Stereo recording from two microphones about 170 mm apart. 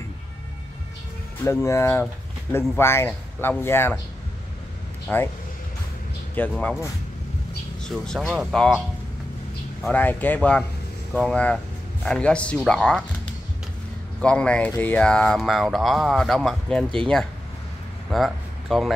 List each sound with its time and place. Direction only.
1.4 s speech: 15° left (ahead or behind)
5.0 s speech: 10° left (ahead or behind)
6.3 s speech: 10° left (ahead or behind)
7.8 s speech: 5° left (ahead or behind)
9.8 s speech: 10° left (ahead or behind)